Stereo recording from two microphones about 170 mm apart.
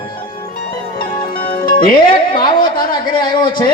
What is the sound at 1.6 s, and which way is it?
Speech, 55° left (ahead or behind).